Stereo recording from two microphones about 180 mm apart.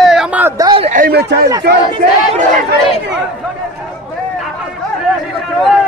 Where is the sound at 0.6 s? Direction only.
25° right (ahead or behind).